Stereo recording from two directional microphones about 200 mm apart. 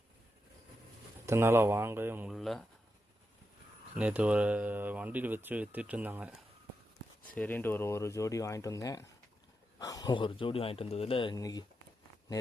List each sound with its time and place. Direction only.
1.3 s speech: 10° right (ahead or behind)
3.9 s speech: 5° right (ahead or behind)
7.3 s speech: 10° left (ahead or behind)